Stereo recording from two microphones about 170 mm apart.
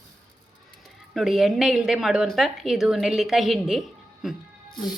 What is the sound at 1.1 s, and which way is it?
A woman's voice, centre (ahead or behind).